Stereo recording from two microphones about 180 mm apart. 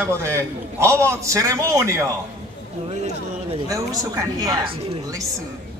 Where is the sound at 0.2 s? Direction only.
15° right (ahead or behind).